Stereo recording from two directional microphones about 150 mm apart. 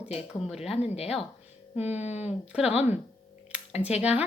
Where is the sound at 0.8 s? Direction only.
45° left (ahead or behind).